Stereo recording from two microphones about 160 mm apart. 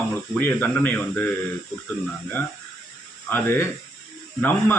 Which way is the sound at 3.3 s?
15° left (ahead or behind).